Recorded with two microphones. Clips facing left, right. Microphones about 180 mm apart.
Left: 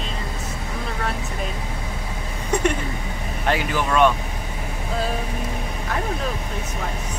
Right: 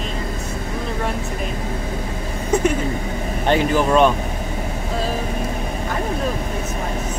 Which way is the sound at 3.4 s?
30° right (ahead or behind).